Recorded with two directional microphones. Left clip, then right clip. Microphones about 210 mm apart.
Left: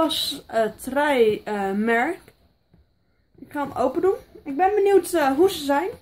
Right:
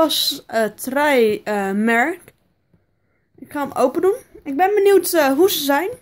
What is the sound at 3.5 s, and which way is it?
Speech, 35° right (ahead or behind).